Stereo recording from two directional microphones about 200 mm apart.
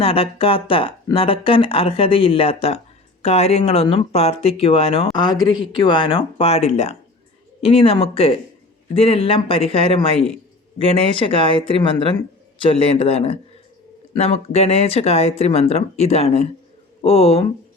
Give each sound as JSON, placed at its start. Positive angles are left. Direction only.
{"t": 0.0, "sound": "speech", "side_deg": 30}